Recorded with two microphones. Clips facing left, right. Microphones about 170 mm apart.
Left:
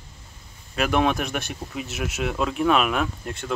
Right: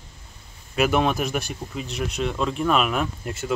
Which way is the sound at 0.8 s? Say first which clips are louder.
Right 1 dB; 5° right (ahead or behind).